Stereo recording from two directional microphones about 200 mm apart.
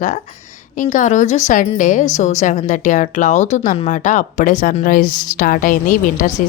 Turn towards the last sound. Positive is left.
turn(degrees=40)  # may be behind; listen again after turning